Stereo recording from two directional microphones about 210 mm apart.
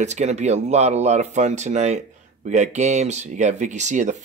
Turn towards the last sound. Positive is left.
turn(degrees=-35)  # may be behind; listen again after turning